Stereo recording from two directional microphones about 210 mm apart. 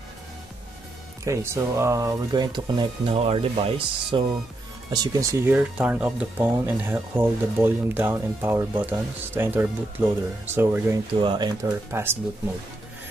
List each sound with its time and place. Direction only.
1.2 s speech: 15° right (ahead or behind)